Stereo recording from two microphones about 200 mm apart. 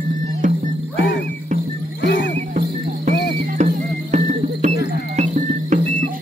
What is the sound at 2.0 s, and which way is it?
Music, 60° left (ahead or behind).